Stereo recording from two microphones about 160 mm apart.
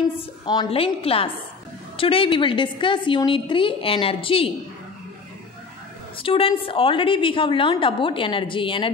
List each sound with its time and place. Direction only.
0.5 s a woman's voice: 30° left (ahead or behind)
6.1 s a woman's voice: 35° left (ahead or behind)